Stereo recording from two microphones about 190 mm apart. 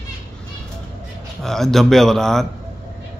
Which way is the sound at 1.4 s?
Centre (ahead or behind).